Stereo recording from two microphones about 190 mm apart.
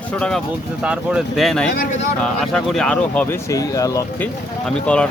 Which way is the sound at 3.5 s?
20° left (ahead or behind).